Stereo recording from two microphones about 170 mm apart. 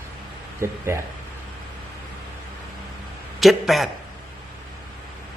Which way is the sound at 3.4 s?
Centre (ahead or behind).